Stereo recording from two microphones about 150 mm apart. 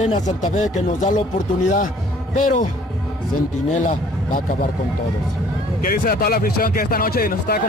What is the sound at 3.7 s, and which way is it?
Speech, 55° left (ahead or behind).